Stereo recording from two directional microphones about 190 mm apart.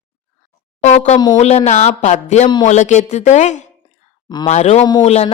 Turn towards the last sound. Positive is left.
turn(degrees=35)  # may be behind; listen again after turning